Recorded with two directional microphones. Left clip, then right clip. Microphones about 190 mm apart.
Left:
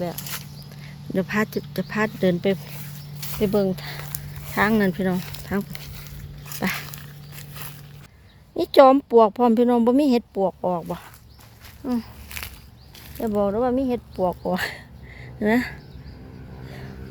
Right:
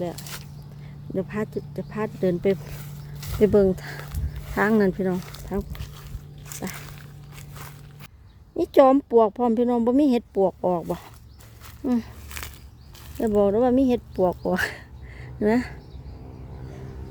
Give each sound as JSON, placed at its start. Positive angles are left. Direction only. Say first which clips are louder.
{"t": 0.0, "sound": "speech", "louder": "left 2 dB", "side_deg": -5}
{"t": 2.4, "sound": "a sound", "louder": "even", "side_deg": -20}
{"t": 4.5, "sound": "speech", "louder": "even", "side_deg": -20}
{"t": 6.6, "sound": "dog", "louder": "left 9 dB", "side_deg": 10}
{"t": 7.3, "sound": "walk", "louder": "left 3 dB", "side_deg": -15}
{"t": 8.7, "sound": "speech", "louder": "left 3 dB", "side_deg": -10}
{"t": 11.9, "sound": "a sound", "louder": "right 2 dB", "side_deg": -20}
{"t": 13.1, "sound": "speech", "louder": "right 2 dB", "side_deg": -25}
{"t": 14.4, "sound": "speech", "louder": "right 1 dB", "side_deg": -20}